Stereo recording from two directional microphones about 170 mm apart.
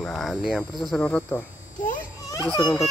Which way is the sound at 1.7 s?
50° left (ahead or behind).